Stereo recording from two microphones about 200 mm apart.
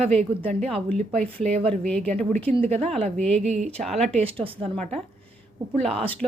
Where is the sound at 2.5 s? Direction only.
30° right (ahead or behind).